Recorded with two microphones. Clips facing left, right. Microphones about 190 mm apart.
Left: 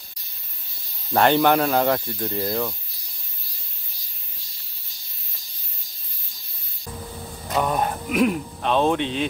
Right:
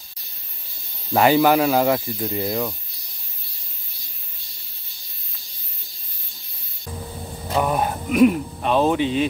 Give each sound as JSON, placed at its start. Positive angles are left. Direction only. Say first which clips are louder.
{"t": 1.1, "sound": "speech", "louder": "right 2 dB", "side_deg": -5}
{"t": 7.5, "sound": "speech", "louder": "right 1 dB", "side_deg": -5}